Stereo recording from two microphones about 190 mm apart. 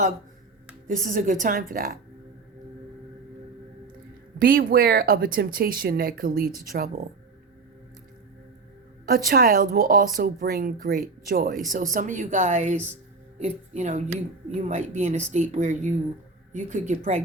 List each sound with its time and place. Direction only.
0.9 s a woman's voice: 45° right (ahead or behind)
4.4 s a woman's voice: 50° right (ahead or behind)
9.0 s a woman's voice: 50° right (ahead or behind)